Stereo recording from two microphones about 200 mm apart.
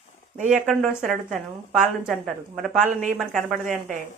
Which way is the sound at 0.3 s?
40° right (ahead or behind).